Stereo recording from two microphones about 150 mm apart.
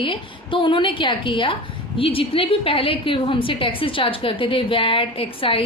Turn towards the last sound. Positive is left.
turn(degrees=35)  # may be behind; listen again after turning